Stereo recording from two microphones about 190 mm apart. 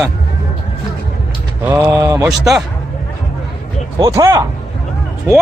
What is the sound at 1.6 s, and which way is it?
Speech, 15° right (ahead or behind).